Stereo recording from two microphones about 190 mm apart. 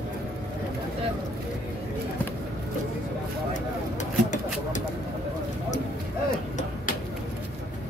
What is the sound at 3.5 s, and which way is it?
Vehicle, 40° left (ahead or behind).